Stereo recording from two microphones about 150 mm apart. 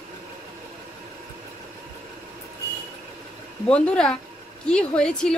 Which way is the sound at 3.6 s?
5° left (ahead or behind).